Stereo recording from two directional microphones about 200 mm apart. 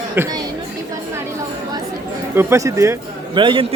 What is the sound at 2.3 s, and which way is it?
Speech, 15° right (ahead or behind).